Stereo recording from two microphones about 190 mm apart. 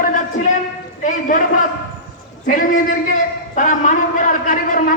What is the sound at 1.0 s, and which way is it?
Speech, 45° left (ahead or behind).